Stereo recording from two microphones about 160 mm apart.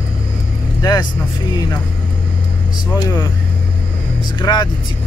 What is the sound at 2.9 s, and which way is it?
Speech, 25° left (ahead or behind).